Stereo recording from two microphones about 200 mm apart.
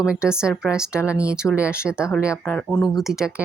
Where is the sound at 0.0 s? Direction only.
5° right (ahead or behind).